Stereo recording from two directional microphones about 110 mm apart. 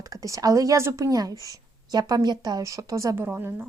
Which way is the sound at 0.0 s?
30° right (ahead or behind).